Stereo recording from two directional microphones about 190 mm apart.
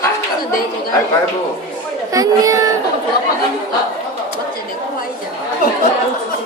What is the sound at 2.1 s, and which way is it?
Speech, 15° right (ahead or behind).